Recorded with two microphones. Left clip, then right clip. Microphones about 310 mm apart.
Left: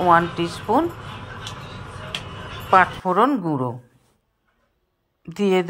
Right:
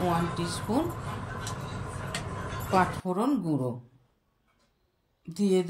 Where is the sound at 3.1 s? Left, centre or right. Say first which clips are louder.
Left 12 dB; left.